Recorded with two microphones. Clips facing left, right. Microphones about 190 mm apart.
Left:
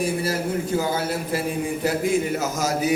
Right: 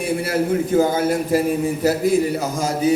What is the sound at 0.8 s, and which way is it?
Speech, 50° right (ahead or behind).